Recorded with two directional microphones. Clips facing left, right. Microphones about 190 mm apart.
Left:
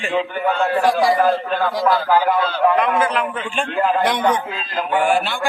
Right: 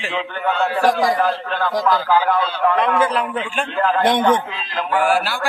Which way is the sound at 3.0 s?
35° right (ahead or behind).